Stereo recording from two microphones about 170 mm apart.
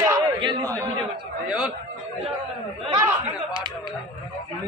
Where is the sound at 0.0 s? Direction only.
20° right (ahead or behind).